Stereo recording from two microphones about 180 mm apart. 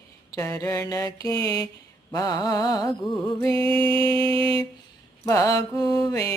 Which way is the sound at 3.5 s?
30° right (ahead or behind).